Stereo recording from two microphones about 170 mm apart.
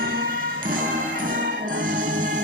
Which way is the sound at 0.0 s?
60° right (ahead or behind).